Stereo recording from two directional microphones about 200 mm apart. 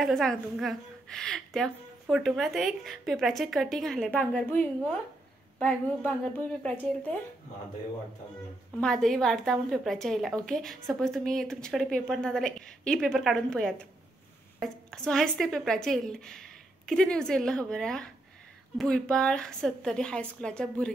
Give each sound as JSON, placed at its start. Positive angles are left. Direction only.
{"t": 0.0, "sound": "a woman's voice", "side_deg": 0}
{"t": 8.8, "sound": "a woman's voice", "side_deg": 0}